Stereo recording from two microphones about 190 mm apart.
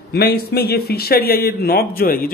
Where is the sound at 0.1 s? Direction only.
55° left (ahead or behind).